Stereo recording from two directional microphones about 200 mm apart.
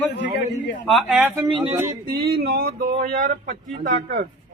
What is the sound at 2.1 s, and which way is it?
Speech, 50° right (ahead or behind).